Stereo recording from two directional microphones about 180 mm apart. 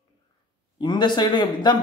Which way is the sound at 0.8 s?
25° left (ahead or behind).